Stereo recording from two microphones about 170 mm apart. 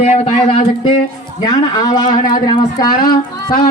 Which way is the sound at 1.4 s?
20° left (ahead or behind).